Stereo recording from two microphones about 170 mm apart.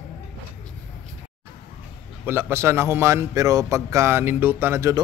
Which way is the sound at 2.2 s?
15° right (ahead or behind).